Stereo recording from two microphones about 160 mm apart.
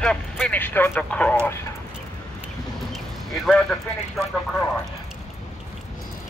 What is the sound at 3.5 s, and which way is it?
Speech, 5° left (ahead or behind).